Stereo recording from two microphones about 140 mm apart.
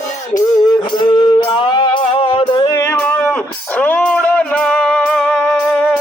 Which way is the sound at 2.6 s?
20° left (ahead or behind).